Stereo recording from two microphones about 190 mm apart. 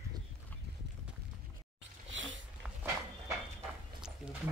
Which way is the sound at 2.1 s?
80° right.